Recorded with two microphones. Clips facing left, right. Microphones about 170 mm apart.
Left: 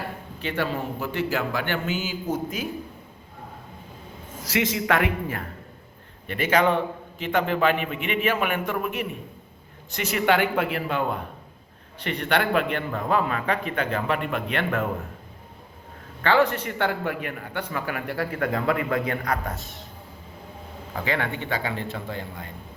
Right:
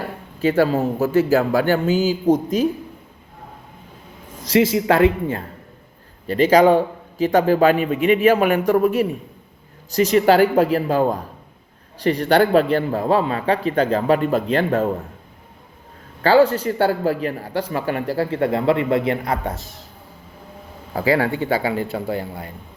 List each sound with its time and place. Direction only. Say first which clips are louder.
0.4 s a man's voice: right 11 dB; 40° right (ahead or behind)
4.4 s a man's voice: right 8 dB; 30° right (ahead or behind)
16.2 s a man's voice: right 7 dB; 30° right (ahead or behind)
20.9 s a man's voice: right 9 dB; 35° right (ahead or behind)